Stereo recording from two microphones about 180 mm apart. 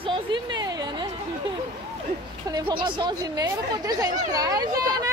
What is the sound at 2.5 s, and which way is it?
Speech, 25° right (ahead or behind).